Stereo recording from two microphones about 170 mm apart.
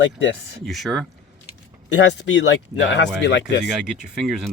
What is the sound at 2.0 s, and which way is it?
Speech, 90° left.